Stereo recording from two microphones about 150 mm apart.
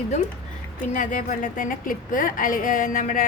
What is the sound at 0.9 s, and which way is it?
A woman's voice, 60° left (ahead or behind).